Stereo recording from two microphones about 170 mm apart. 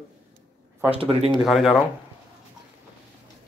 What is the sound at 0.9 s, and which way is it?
Speech, 35° right (ahead or behind).